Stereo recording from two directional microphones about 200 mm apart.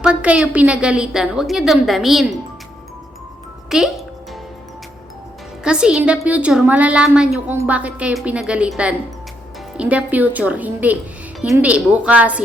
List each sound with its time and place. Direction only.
0.0 s a woman's voice: 5° right (ahead or behind)
3.7 s music: centre (ahead or behind)
5.6 s a woman's voice: 5° right (ahead or behind)